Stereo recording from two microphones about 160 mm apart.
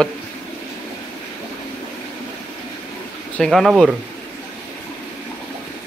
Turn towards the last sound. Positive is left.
turn(degrees=0)  # may be behind; listen again after turning